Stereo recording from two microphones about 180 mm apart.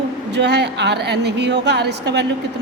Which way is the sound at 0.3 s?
70° right (ahead or behind).